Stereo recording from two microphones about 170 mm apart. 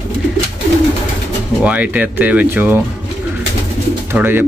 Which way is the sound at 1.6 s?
10° right (ahead or behind).